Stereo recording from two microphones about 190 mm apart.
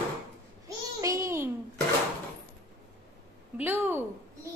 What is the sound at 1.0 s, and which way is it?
Speech, 15° right (ahead or behind).